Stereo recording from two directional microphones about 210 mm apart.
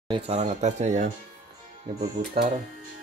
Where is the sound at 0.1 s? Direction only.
30° right (ahead or behind).